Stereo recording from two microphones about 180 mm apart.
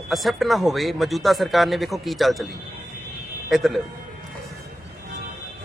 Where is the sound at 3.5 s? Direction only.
Centre (ahead or behind).